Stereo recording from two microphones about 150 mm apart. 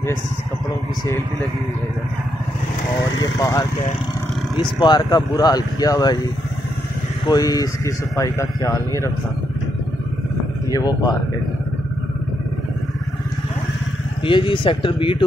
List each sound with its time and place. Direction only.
3.2 s speech: 25° left (ahead or behind)
7.2 s speech: 25° left (ahead or behind)
10.7 s speech: 25° left (ahead or behind)
14.2 s speech: 35° left (ahead or behind)